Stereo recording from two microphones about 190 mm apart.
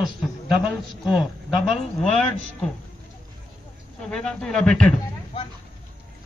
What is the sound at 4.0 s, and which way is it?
Speech, 5° left (ahead or behind).